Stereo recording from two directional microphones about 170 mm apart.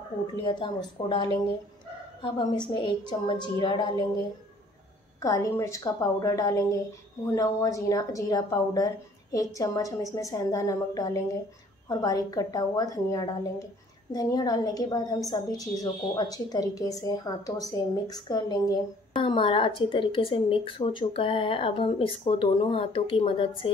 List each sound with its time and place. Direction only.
0.4 s a woman's voice: 25° left (ahead or behind)
5.2 s a woman's voice: 20° left (ahead or behind)